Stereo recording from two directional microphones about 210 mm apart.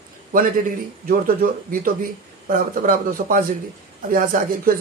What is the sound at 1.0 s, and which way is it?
A man's voice, 45° right (ahead or behind).